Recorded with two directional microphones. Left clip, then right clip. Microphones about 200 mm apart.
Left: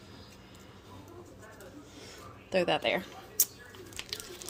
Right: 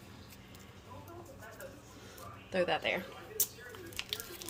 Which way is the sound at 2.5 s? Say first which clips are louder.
Left 4 dB; 45° left (ahead or behind).